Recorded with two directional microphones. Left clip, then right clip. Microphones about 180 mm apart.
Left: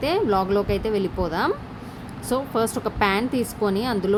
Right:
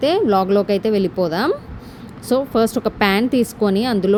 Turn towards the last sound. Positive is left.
turn(degrees=-30)  # may be behind; listen again after turning